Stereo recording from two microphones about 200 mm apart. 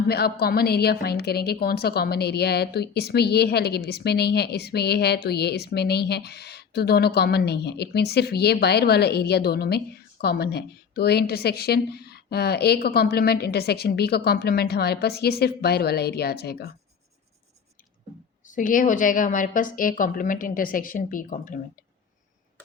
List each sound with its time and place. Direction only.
0.1 s a woman's voice: 50° left (ahead or behind)
18.4 s a woman's voice: 40° left (ahead or behind)